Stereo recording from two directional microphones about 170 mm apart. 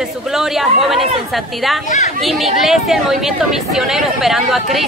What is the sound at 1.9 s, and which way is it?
Speech, 45° left (ahead or behind).